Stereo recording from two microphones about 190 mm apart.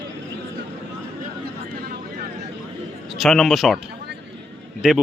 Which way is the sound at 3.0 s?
Centre (ahead or behind).